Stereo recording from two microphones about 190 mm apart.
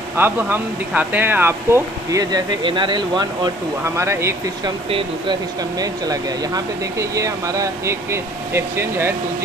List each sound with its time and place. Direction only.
0.2 s speech: 10° right (ahead or behind)
3.8 s speech: 15° right (ahead or behind)
4.8 s speech: 25° right (ahead or behind)